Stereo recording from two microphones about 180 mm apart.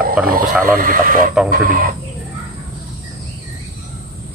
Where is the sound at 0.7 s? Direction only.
50° right (ahead or behind).